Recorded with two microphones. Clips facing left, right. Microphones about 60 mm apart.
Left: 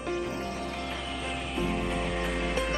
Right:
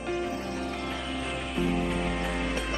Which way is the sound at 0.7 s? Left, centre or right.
Centre.